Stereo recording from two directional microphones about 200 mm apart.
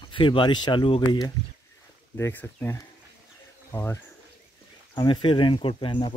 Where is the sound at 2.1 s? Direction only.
10° left (ahead or behind).